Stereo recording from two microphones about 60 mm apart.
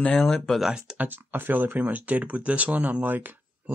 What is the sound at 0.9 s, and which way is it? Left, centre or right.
Speech, right.